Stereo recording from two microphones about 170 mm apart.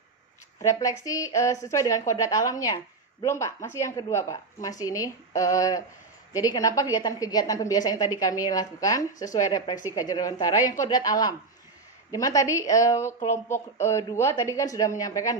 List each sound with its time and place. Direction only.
0.6 s a woman's voice: 20° left (ahead or behind)